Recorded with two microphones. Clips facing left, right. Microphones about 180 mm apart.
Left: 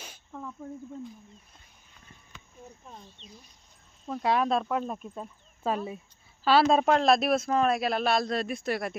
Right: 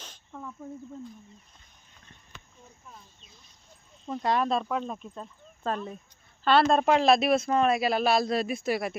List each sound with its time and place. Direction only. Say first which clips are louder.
0.0 s a sound: left 1 dB; 5° left (ahead or behind)
2.8 s speech: left 4 dB; 30° left (ahead or behind)
4.0 s speech: even; 5° left (ahead or behind)